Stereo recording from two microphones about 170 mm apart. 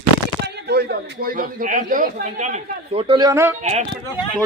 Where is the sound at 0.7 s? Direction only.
70° right (ahead or behind); by 3.0 s 45° right (ahead or behind).